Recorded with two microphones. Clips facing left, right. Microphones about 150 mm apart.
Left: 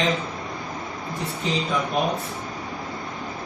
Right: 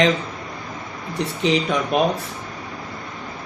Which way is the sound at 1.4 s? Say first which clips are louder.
Right 5 dB; 80° right.